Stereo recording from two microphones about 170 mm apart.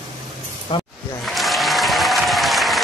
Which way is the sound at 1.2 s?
Centre (ahead or behind).